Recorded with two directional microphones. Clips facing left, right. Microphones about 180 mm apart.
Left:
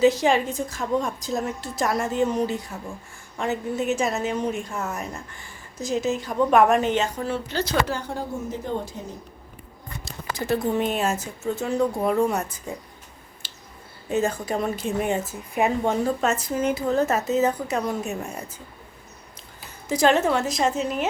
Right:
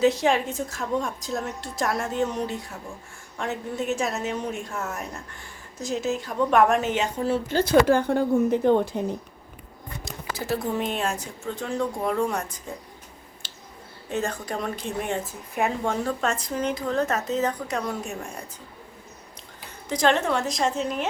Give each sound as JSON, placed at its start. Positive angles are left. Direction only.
{"t": 0.0, "sound": "a woman's voice", "side_deg": 0}
{"t": 7.4, "sound": "a woman's voice", "side_deg": -50}
{"t": 10.3, "sound": "a woman's voice", "side_deg": 0}
{"t": 13.4, "sound": "clicking", "side_deg": 0}
{"t": 14.1, "sound": "a woman's voice", "side_deg": 5}
{"t": 19.9, "sound": "a woman's voice", "side_deg": 5}